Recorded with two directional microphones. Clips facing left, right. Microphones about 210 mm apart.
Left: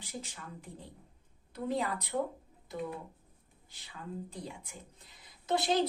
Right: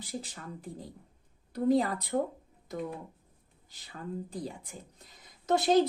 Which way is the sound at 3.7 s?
35° right (ahead or behind).